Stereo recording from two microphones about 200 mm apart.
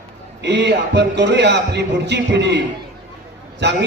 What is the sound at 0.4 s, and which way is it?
A man's voice, 60° right (ahead or behind).